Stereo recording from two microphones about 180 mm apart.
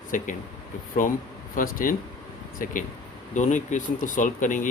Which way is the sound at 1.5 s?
50° left (ahead or behind).